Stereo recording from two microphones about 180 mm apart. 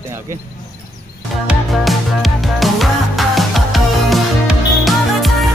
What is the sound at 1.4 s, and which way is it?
Music, centre (ahead or behind).